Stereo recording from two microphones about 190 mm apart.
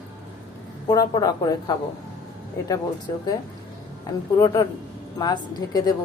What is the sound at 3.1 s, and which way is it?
Speech, 20° left (ahead or behind).